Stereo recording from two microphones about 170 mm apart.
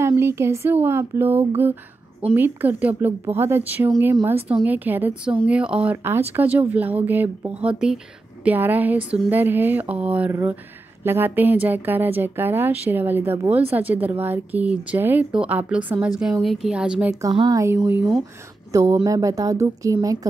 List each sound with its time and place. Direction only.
0.0 s a woman's voice: 15° right (ahead or behind)
17.2 s a woman's voice: 25° right (ahead or behind)